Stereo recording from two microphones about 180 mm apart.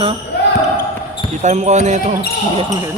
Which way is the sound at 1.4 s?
40° right (ahead or behind).